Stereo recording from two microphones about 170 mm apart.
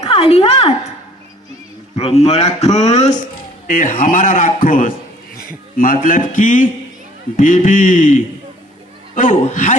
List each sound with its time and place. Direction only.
0.0 s a woman's voice: 35° left (ahead or behind)
2.0 s speech: 35° left (ahead or behind)
3.7 s a man's voice: 50° left (ahead or behind)